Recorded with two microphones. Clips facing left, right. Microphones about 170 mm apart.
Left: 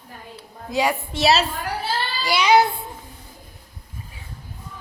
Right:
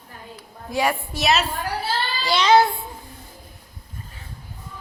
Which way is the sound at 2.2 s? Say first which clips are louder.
Even; 10° left (ahead or behind).